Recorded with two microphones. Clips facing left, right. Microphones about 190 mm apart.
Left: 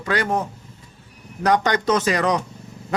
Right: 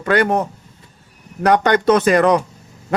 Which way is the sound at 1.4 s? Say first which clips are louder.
Right 5 dB; 60° right (ahead or behind).